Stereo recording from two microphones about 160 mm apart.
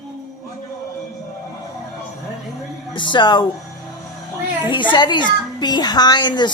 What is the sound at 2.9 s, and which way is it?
Speech, 30° left (ahead or behind).